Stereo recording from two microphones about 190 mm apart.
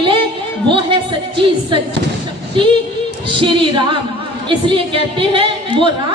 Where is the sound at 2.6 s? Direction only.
25° right (ahead or behind).